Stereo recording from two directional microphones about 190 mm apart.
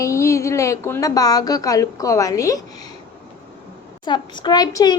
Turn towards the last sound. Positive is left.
turn(degrees=20)  # may be behind; listen again after turning